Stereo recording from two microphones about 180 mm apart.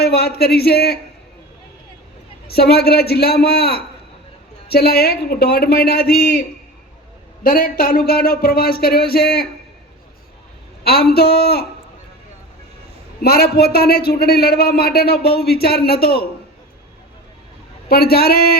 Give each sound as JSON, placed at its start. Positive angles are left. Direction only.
{"t": 0.0, "sound": "a man's voice", "side_deg": 60}
{"t": 2.5, "sound": "a man's voice", "side_deg": 60}
{"t": 7.4, "sound": "a man's voice", "side_deg": 55}
{"t": 10.8, "sound": "a man's voice", "side_deg": 60}
{"t": 13.2, "sound": "a man's voice", "side_deg": 60}
{"t": 17.8, "sound": "a man's voice", "side_deg": 60}